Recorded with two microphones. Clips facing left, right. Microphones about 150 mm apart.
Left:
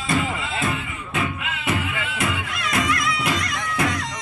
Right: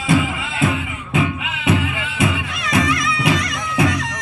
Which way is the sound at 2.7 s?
80° right.